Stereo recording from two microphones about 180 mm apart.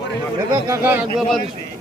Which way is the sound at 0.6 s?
15° right (ahead or behind).